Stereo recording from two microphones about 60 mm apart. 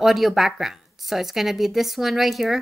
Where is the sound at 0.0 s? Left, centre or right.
Centre.